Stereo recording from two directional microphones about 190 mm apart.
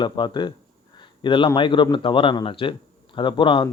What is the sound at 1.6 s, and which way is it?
A man's voice, 25° left (ahead or behind).